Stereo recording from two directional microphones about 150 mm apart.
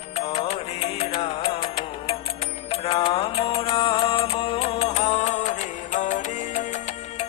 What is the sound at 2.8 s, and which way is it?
Music, 40° left (ahead or behind).